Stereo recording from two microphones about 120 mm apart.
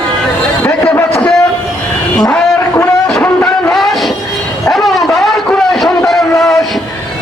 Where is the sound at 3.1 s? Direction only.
5° left (ahead or behind).